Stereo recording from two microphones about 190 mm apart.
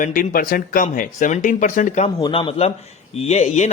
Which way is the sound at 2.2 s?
25° left (ahead or behind).